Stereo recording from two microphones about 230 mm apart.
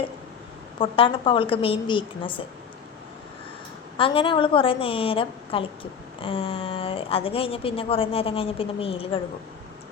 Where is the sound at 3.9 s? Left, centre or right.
Left.